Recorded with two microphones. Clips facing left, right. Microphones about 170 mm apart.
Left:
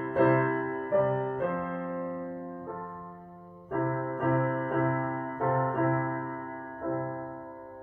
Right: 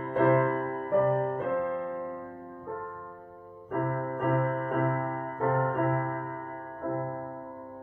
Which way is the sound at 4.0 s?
25° right (ahead or behind).